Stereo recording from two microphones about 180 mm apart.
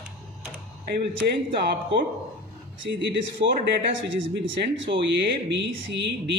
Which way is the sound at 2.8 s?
80° right.